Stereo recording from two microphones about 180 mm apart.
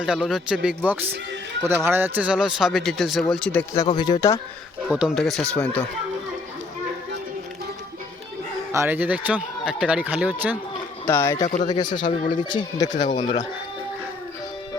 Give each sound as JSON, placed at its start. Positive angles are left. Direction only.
{"t": 0.0, "sound": "speech", "side_deg": 0}
{"t": 3.8, "sound": "speech", "side_deg": 25}
{"t": 4.9, "sound": "speech", "side_deg": 0}
{"t": 8.7, "sound": "speech", "side_deg": -15}
{"t": 11.0, "sound": "speech", "side_deg": 15}
{"t": 11.4, "sound": "speech", "side_deg": 40}
{"t": 11.7, "sound": "speech", "side_deg": 25}
{"t": 12.0, "sound": "speech", "side_deg": 45}
{"t": 12.4, "sound": "speech", "side_deg": 25}
{"t": 12.9, "sound": "speech", "side_deg": 45}